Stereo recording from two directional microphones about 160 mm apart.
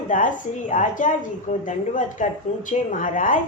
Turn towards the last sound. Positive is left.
turn(degrees=55)  # may be behind; listen again after turning